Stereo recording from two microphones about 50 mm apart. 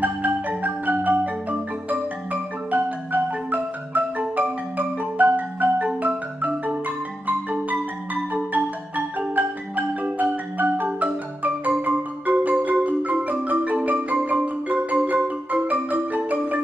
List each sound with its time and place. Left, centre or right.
0.0 s marimba: right
2.7 s marimba: right